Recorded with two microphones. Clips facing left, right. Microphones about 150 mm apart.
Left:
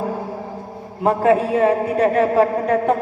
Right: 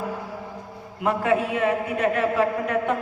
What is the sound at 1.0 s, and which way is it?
A man's voice, 35° left (ahead or behind).